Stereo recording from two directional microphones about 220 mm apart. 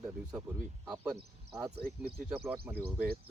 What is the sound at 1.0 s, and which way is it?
Speech, 10° right (ahead or behind).